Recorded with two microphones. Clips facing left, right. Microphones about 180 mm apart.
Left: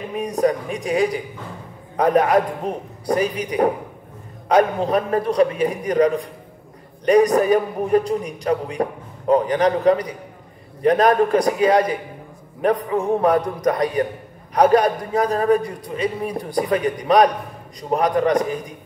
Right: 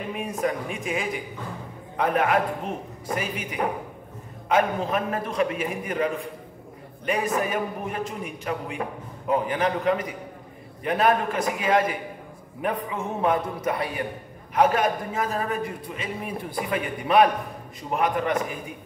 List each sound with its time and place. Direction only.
0.2 s a man's voice: 35° left (ahead or behind)
12.9 s a man's voice: 35° left (ahead or behind)